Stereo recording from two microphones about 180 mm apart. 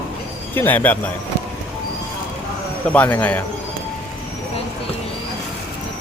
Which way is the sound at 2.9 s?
10° left (ahead or behind).